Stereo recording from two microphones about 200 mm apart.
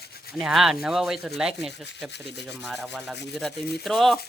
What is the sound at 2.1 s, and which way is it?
Speech, 60° left (ahead or behind).